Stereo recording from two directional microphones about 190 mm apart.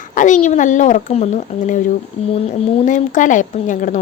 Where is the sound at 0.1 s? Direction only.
45° left (ahead or behind).